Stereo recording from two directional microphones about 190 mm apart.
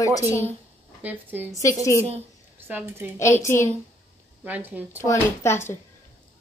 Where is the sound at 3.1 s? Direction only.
15° left (ahead or behind).